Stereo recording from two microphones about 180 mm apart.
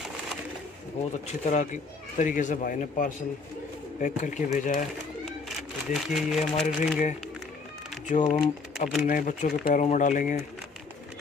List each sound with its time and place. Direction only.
1.2 s speech: 40° left (ahead or behind)
5.6 s speech: centre (ahead or behind)
8.1 s speech: 45° left (ahead or behind)